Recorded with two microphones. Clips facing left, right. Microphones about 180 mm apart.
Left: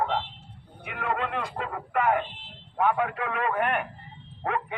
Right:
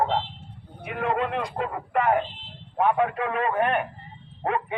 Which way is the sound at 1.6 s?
35° right (ahead or behind).